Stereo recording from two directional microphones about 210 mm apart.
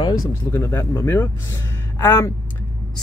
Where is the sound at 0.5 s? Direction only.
10° left (ahead or behind).